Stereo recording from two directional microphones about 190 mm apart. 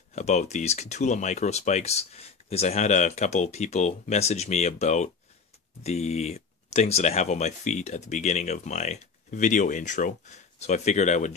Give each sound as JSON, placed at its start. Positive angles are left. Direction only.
{"t": 0.1, "sound": "speech", "side_deg": 40}